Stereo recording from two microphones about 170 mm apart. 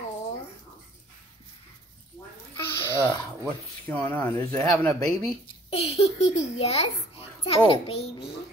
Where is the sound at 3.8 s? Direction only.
10° left (ahead or behind).